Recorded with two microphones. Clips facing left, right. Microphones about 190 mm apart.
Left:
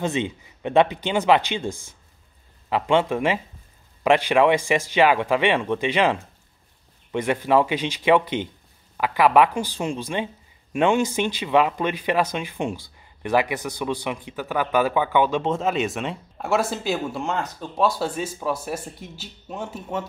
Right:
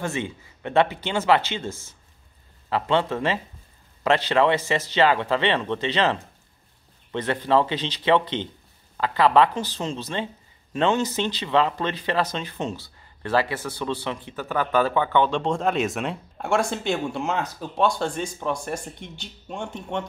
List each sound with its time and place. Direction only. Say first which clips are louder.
0.0 s speech: left 4 dB; 20° left (ahead or behind)